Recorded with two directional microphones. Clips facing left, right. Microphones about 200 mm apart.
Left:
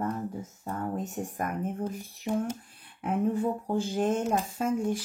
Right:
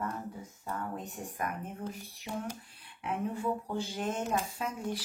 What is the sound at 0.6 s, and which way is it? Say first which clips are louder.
A child's voice: left 5 dB; 45° left (ahead or behind).